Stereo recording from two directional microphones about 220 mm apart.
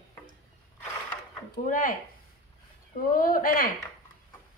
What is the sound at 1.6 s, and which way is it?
Speech, 40° left (ahead or behind).